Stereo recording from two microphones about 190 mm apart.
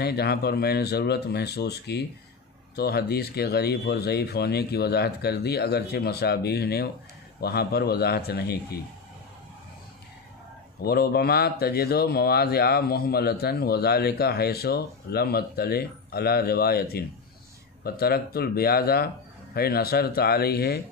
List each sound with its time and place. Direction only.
0.0 s speech: 55° left (ahead or behind)
10.8 s speech: 55° left (ahead or behind)